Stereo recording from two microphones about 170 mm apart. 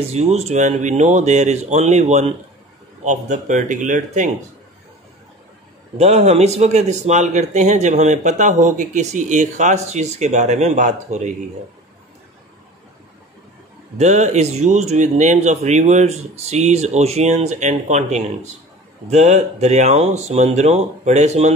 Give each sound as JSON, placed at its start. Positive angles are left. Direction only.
{"t": 0.0, "sound": "speech", "side_deg": -40}
{"t": 5.9, "sound": "speech", "side_deg": -40}
{"t": 13.9, "sound": "speech", "side_deg": -40}